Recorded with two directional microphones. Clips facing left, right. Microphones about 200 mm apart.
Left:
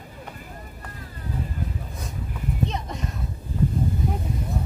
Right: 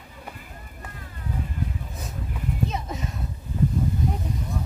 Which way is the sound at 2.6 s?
5° right (ahead or behind).